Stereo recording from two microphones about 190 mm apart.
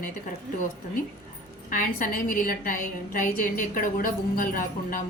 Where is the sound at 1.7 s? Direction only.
45° left (ahead or behind).